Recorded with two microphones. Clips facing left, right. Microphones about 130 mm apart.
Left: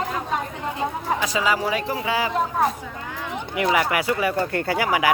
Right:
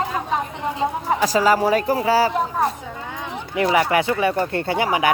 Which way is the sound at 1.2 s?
40° right (ahead or behind).